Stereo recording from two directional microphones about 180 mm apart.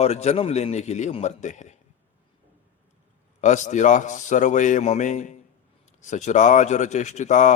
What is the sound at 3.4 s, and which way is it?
A man's voice, 40° left (ahead or behind).